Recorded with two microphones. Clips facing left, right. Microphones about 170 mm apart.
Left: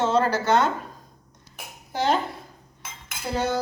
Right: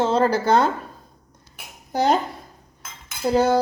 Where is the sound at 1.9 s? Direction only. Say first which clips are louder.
Right 4 dB; 40° right (ahead or behind).